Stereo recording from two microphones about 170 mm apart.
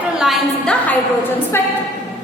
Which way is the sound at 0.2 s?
Centre (ahead or behind).